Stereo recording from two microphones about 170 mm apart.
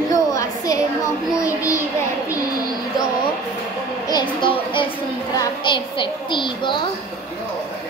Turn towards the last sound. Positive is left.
turn(degrees=30)  # may be behind; listen again after turning